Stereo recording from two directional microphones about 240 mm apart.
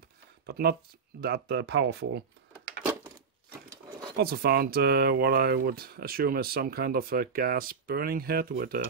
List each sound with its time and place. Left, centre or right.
0.5 s speech: right
4.2 s speech: right